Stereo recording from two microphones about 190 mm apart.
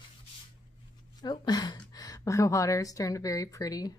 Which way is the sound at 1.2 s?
25° left (ahead or behind).